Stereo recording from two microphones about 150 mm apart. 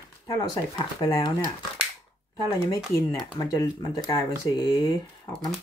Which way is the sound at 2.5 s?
25° left (ahead or behind).